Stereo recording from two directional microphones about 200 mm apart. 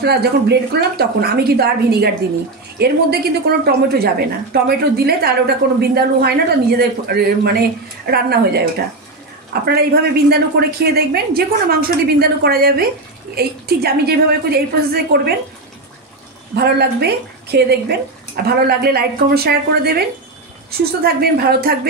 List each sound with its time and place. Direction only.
0.0 s speech: 55° right (ahead or behind)
16.5 s speech: 55° right (ahead or behind)